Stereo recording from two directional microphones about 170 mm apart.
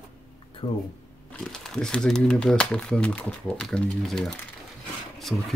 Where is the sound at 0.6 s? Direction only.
30° left (ahead or behind).